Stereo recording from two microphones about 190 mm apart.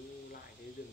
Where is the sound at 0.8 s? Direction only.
50° left (ahead or behind).